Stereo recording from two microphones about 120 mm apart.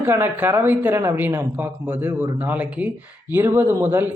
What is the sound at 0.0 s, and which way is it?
A man's voice, 20° right (ahead or behind).